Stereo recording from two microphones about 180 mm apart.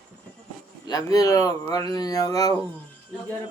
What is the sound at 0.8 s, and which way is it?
Speech, 20° left (ahead or behind).